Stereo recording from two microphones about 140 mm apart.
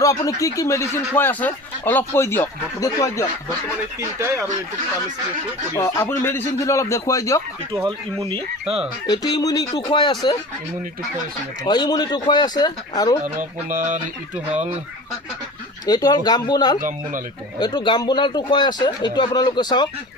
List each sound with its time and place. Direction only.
0.0 s speech: 25° left (ahead or behind)
5.7 s speech: 20° left (ahead or behind)
9.0 s speech: 30° left (ahead or behind)
11.6 s speech: 30° left (ahead or behind)
13.2 s music: 70° right (ahead or behind)
14.5 s speech: 55° right (ahead or behind)
15.9 s speech: 30° left (ahead or behind)